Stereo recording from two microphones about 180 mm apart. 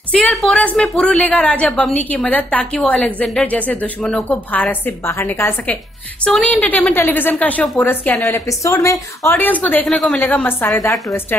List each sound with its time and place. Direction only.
0.1 s a woman's voice: 5° left (ahead or behind)
10.2 s a woman's voice: 10° left (ahead or behind)